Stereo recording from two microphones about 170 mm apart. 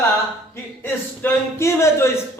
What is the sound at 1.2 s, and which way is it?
Speech, 15° left (ahead or behind).